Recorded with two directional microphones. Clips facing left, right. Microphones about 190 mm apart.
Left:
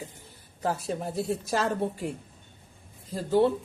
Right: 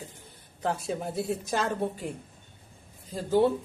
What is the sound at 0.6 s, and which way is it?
A woman's voice, centre (ahead or behind).